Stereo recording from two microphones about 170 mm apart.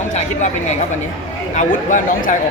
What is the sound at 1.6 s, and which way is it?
Speech, 50° left (ahead or behind).